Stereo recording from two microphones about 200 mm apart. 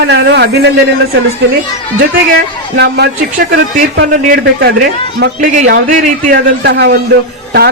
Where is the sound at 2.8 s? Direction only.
55° right (ahead or behind).